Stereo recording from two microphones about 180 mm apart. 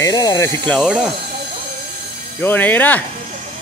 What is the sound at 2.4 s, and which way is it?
Speech, 10° left (ahead or behind).